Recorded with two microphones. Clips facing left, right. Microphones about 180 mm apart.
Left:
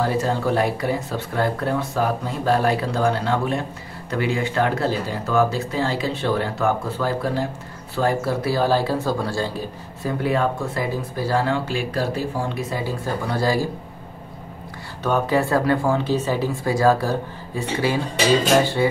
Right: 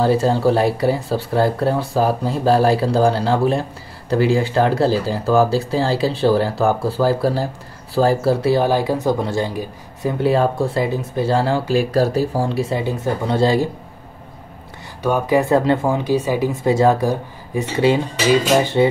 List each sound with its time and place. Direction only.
0.0 s speech: 30° right (ahead or behind)
10.3 s speech: 30° right (ahead or behind)
15.0 s speech: 10° right (ahead or behind)